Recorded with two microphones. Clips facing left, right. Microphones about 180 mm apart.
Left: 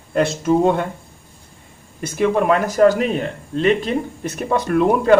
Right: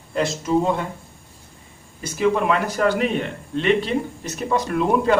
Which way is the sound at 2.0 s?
55° left (ahead or behind).